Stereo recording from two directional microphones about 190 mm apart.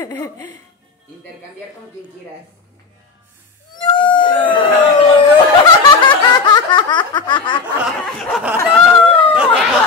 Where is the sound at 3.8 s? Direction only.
25° left (ahead or behind).